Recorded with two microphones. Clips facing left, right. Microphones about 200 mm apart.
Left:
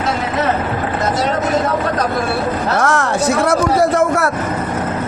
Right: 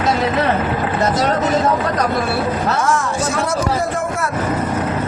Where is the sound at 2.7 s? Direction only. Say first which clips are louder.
Left 2 dB; 65° left (ahead or behind).